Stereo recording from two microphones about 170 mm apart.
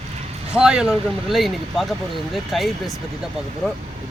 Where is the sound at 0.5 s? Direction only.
5° right (ahead or behind).